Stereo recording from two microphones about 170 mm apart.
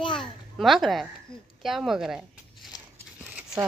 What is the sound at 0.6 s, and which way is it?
A child's voice, centre (ahead or behind).